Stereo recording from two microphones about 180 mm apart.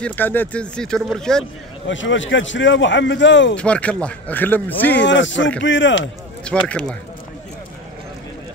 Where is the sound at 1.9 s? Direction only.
90° left.